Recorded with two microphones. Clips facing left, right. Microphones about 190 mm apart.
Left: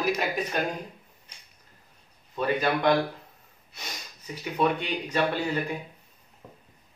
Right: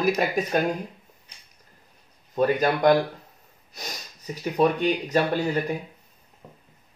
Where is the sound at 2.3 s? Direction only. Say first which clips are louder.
Right 4 dB; 40° right (ahead or behind).